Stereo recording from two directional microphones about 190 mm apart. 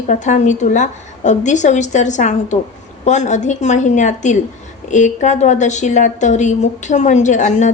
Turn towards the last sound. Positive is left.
turn(degrees=40)  # may be behind; listen again after turning